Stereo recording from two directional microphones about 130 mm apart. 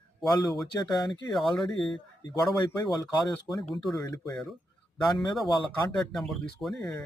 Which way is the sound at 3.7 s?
Centre (ahead or behind).